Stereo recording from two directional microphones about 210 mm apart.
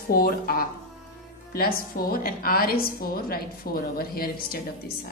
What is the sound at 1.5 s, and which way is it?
A woman's voice, 45° left (ahead or behind).